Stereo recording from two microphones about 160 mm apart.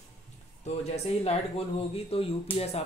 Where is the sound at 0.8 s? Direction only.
45° left (ahead or behind).